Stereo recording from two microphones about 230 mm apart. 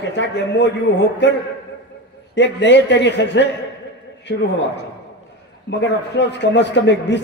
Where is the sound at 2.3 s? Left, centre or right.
Left.